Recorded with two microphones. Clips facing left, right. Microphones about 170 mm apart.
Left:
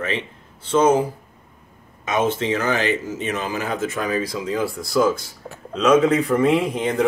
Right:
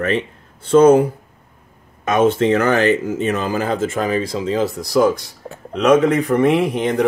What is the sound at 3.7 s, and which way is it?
Speech, 25° right (ahead or behind).